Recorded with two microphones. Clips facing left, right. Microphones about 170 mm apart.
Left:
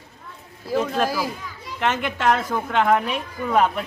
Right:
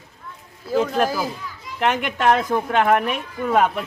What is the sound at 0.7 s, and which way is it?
Speech, centre (ahead or behind).